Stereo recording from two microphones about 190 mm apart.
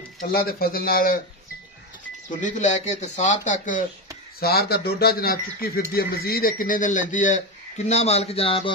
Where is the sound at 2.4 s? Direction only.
40° left (ahead or behind).